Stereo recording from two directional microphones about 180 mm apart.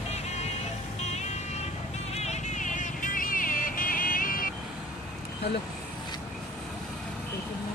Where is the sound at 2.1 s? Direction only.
35° left (ahead or behind).